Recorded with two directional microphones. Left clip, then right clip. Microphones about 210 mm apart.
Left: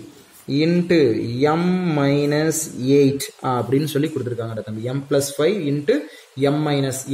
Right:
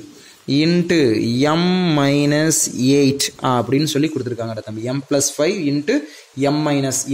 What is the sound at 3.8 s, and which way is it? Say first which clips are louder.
Speech: right 3 dB; 25° right (ahead or behind).